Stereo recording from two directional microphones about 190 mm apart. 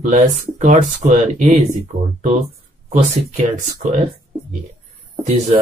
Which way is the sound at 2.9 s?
40° right (ahead or behind).